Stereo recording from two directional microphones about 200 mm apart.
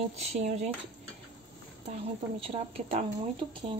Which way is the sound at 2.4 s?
30° right (ahead or behind).